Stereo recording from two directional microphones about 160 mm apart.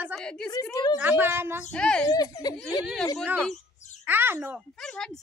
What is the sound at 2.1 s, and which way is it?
Speech, 25° left (ahead or behind).